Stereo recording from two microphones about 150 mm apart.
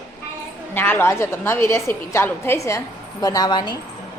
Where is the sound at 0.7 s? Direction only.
15° left (ahead or behind); by 3.8 s 30° left (ahead or behind).